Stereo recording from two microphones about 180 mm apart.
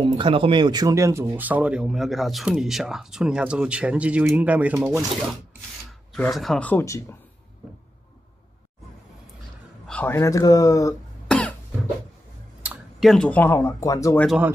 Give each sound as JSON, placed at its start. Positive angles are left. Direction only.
{"t": 0.0, "sound": "speech", "side_deg": -30}
{"t": 6.1, "sound": "speech", "side_deg": 5}
{"t": 9.8, "sound": "speech", "side_deg": 10}
{"t": 11.2, "sound": "cough", "side_deg": 5}
{"t": 12.6, "sound": "speech", "side_deg": 0}
{"t": 14.2, "sound": "speech", "side_deg": -5}